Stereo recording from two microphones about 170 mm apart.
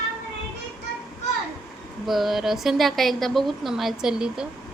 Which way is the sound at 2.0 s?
Centre (ahead or behind).